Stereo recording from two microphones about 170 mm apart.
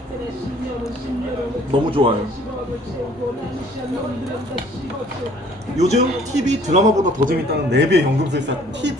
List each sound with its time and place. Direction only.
1.9 s a man's voice: 30° right (ahead or behind)
5.7 s speech: 40° right (ahead or behind)
7.5 s speech: 90° right